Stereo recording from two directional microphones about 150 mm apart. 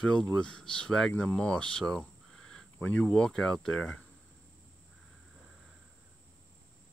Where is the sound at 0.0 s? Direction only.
5° left (ahead or behind).